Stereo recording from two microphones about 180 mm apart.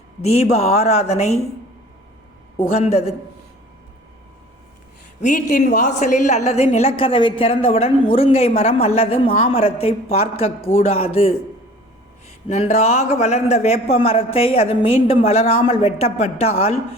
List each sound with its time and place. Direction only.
0.2 s a man's voice: 35° left (ahead or behind)
2.7 s a man's voice: 35° left (ahead or behind)
5.2 s a man's voice: 45° left (ahead or behind)
12.5 s a man's voice: 35° left (ahead or behind)